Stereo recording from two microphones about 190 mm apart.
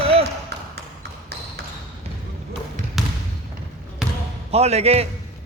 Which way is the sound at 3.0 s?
Centre (ahead or behind).